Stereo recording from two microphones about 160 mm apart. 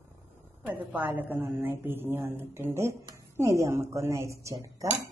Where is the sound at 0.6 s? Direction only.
10° right (ahead or behind).